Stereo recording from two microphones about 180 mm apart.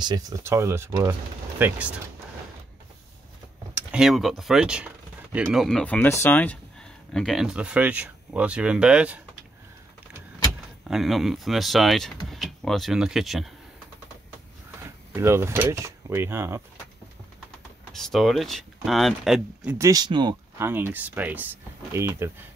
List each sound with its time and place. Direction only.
0.0 s speech: 20° right (ahead or behind)
3.7 s speech: 5° right (ahead or behind)
10.8 s speech: centre (ahead or behind)
15.1 s speech: 15° right (ahead or behind)
17.9 s speech: centre (ahead or behind)
19.9 s speech: 25° right (ahead or behind)
20.5 s speech: 10° right (ahead or behind)